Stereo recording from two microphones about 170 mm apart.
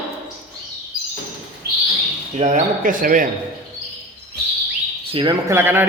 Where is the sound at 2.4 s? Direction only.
50° right (ahead or behind).